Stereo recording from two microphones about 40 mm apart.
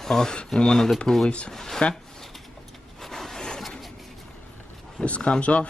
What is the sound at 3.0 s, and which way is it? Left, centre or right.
Vehicle, centre.